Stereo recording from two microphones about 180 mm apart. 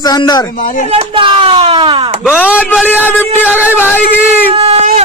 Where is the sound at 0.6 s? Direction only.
50° left (ahead or behind).